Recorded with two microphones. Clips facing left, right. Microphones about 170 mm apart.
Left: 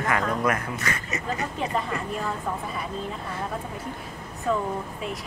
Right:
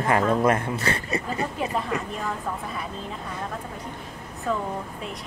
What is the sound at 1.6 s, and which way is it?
Speech, 5° right (ahead or behind).